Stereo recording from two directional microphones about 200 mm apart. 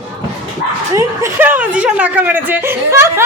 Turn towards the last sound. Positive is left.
turn(degrees=-15)  # may be behind; listen again after turning